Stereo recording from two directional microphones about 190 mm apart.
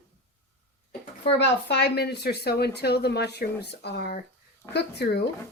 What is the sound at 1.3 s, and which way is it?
Speech, 65° left (ahead or behind).